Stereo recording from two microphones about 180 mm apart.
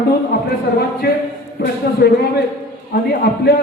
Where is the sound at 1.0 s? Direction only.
60° left (ahead or behind).